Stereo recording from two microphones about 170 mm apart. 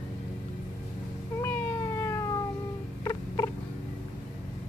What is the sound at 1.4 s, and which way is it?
Cat, 15° left (ahead or behind).